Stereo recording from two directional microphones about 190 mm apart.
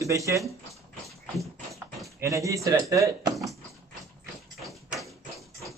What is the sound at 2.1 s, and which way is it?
Speech, 15° right (ahead or behind).